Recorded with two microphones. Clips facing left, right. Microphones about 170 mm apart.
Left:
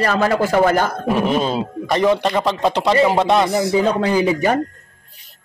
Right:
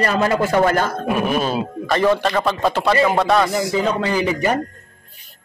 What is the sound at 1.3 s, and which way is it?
Speech, 20° left (ahead or behind).